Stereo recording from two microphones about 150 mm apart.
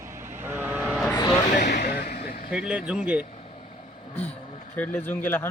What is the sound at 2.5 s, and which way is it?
Speech, 5° right (ahead or behind).